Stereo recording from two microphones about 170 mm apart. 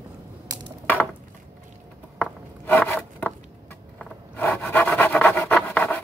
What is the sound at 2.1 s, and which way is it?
Zipper, 10° left (ahead or behind).